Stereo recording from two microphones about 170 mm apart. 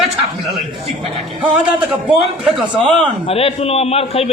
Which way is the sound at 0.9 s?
35° right (ahead or behind).